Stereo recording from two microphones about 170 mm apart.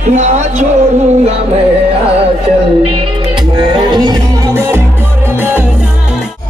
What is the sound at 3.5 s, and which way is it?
Music, 25° right (ahead or behind).